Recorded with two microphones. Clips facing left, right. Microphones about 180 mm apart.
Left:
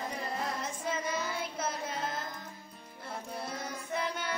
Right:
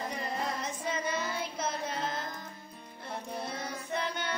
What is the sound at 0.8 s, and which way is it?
Music, 5° left (ahead or behind).